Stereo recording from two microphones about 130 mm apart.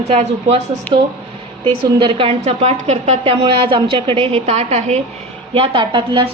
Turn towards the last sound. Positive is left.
turn(degrees=-40)  # may be behind; listen again after turning